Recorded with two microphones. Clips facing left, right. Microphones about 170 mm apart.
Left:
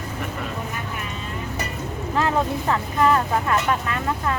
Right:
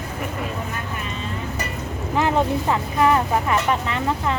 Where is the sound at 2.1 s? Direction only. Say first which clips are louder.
Right 2 dB; 15° right (ahead or behind).